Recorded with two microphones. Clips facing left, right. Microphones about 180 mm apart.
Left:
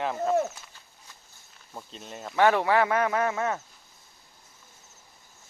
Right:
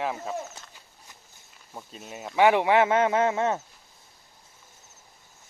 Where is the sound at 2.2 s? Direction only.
15° right (ahead or behind).